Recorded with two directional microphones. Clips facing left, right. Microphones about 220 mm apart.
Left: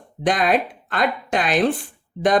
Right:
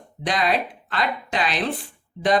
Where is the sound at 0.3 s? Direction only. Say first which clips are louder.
Left 4 dB; 50° left (ahead or behind).